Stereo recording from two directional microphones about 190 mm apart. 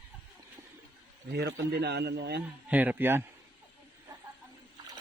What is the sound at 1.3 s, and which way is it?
A man's voice, 60° right (ahead or behind).